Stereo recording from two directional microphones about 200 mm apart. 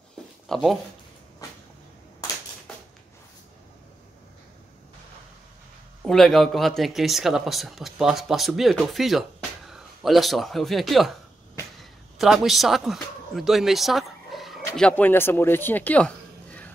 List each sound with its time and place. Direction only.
0.5 s speech: centre (ahead or behind)
6.0 s a man's voice: centre (ahead or behind)